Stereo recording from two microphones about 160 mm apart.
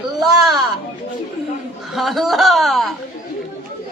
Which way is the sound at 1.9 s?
Centre (ahead or behind).